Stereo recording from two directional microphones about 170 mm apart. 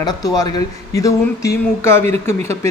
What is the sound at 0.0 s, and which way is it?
Speech, 20° left (ahead or behind).